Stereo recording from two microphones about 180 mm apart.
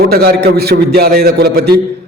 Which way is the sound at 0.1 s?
60° right (ahead or behind).